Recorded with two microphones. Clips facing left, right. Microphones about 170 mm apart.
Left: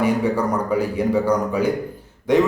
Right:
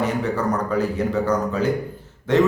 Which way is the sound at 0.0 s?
10° left (ahead or behind).